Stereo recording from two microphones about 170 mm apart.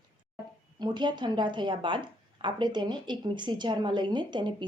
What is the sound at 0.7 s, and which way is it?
A woman's voice, 25° right (ahead or behind).